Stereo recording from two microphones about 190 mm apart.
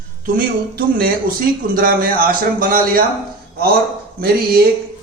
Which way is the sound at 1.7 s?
50° right (ahead or behind).